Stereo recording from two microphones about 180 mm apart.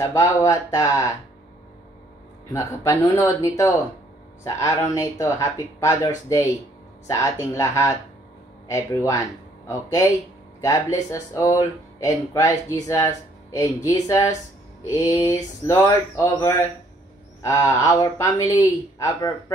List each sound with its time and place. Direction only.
0.0 s speech: 15° left (ahead or behind)
2.5 s a man's voice: 15° left (ahead or behind)